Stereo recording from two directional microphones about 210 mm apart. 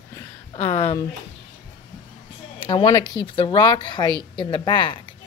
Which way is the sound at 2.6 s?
20° left (ahead or behind).